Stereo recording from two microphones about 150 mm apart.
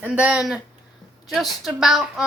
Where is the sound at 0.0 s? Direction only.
10° right (ahead or behind).